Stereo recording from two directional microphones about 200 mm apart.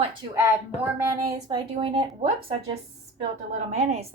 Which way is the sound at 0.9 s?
15° right (ahead or behind).